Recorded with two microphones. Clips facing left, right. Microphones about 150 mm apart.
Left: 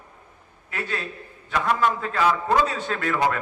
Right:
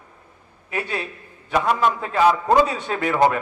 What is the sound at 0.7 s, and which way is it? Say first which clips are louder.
A man's voice: right 3 dB; 15° right (ahead or behind).